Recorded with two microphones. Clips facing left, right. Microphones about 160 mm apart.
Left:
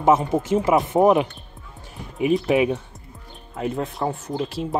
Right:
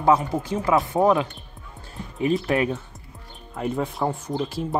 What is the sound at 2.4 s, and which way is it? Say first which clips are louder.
Speech: left 4 dB; 15° left (ahead or behind).